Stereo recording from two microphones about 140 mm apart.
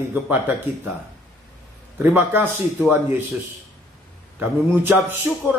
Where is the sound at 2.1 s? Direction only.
15° right (ahead or behind).